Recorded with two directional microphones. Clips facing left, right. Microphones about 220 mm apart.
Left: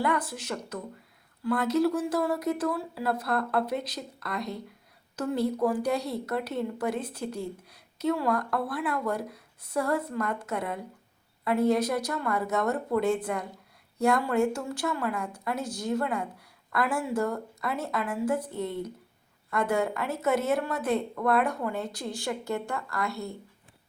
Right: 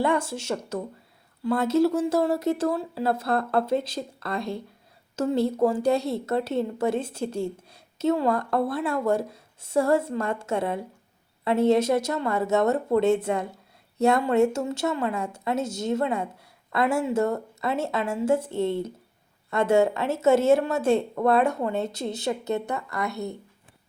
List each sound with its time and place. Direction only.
0.0 s a woman's voice: 25° right (ahead or behind)